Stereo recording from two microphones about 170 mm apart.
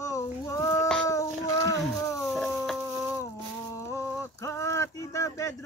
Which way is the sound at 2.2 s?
Centre (ahead or behind).